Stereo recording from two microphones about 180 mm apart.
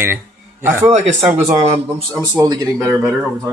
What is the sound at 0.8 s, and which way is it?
A man's voice, 40° right (ahead or behind).